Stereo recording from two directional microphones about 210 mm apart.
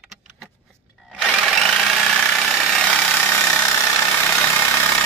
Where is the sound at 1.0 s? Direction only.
Centre (ahead or behind).